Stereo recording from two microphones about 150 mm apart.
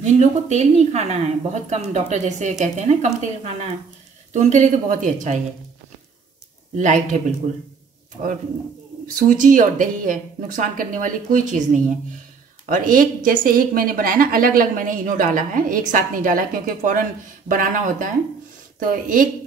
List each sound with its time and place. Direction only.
0.0 s a woman's voice: 50° right (ahead or behind)
6.8 s a woman's voice: 55° right (ahead or behind)
9.0 s a woman's voice: 60° right (ahead or behind)